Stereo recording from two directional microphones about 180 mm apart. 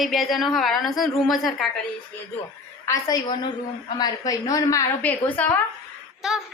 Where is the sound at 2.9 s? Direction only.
20° left (ahead or behind).